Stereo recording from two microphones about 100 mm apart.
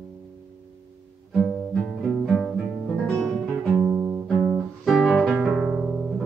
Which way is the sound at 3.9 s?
35° right (ahead or behind).